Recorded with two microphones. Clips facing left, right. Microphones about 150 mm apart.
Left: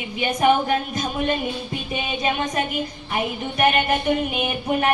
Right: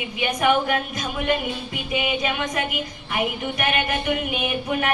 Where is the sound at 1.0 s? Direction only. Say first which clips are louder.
Left 1 dB; 30° left (ahead or behind).